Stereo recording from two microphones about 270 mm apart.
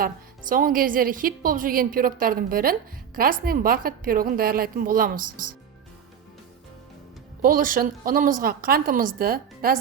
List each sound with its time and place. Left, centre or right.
0.0 s a woman's voice: right
7.4 s a woman's voice: right